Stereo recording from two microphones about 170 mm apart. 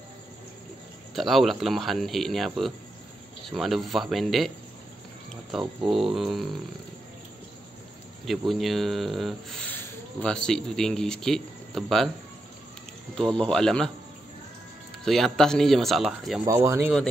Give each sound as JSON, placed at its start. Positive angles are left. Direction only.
{"t": 1.1, "sound": "speech", "side_deg": 0}
{"t": 8.3, "sound": "speech", "side_deg": 0}
{"t": 13.1, "sound": "speech", "side_deg": 5}
{"t": 15.0, "sound": "speech", "side_deg": 0}
{"t": 16.4, "sound": "speech", "side_deg": -15}